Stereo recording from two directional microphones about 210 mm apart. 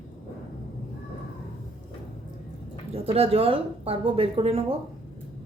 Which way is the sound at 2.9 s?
30° right (ahead or behind).